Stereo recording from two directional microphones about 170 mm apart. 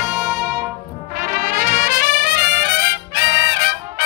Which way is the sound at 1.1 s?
55° right (ahead or behind).